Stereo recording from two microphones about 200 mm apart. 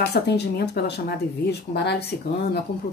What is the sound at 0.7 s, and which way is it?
Speech, 55° left (ahead or behind).